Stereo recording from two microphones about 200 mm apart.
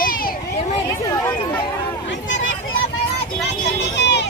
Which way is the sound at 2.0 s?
65° left (ahead or behind).